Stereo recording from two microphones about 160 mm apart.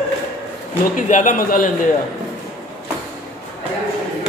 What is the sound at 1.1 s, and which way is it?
Speech, 50° left (ahead or behind).